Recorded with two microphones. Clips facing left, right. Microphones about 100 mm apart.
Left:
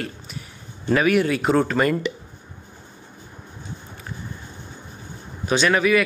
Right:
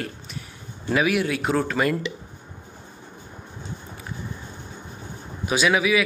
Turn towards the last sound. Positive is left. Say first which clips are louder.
# left 2 dB
turn(degrees=-5)  # may be behind; listen again after turning